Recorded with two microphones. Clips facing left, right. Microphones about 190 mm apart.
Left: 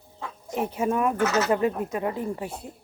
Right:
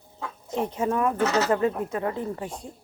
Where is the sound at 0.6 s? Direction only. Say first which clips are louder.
Even; 10° left (ahead or behind).